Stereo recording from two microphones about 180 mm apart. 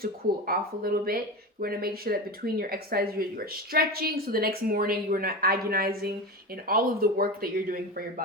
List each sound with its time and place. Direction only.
0.0 s speech: 55° right (ahead or behind)